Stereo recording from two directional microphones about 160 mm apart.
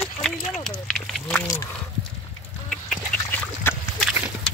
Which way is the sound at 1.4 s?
20° left (ahead or behind).